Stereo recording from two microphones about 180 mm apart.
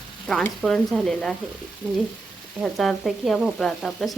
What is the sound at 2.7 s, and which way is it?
Sizzle, centre (ahead or behind).